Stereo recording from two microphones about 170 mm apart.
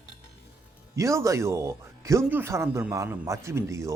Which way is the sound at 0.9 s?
20° right (ahead or behind).